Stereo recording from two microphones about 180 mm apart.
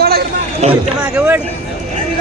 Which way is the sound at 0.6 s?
40° right (ahead or behind).